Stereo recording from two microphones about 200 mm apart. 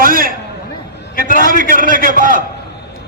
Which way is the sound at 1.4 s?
45° right (ahead or behind).